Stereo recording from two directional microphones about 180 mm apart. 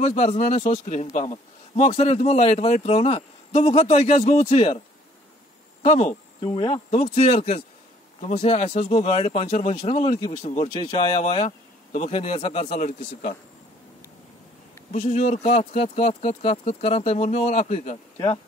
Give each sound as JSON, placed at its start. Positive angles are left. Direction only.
{"t": 0.0, "sound": "a man's voice", "side_deg": 40}
{"t": 5.8, "sound": "a man's voice", "side_deg": 40}
{"t": 14.9, "sound": "a man's voice", "side_deg": 40}